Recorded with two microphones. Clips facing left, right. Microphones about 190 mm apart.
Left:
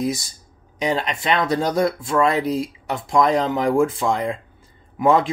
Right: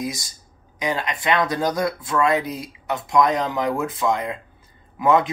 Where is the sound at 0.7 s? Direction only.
30° left (ahead or behind).